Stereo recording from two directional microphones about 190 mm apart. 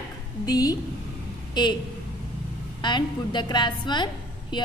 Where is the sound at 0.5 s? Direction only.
20° left (ahead or behind).